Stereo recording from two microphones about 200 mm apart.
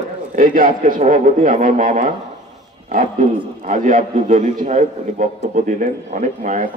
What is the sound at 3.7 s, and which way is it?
A man's voice, 40° right (ahead or behind).